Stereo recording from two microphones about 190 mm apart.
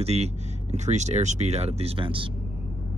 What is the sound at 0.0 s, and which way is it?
Speech, 35° right (ahead or behind).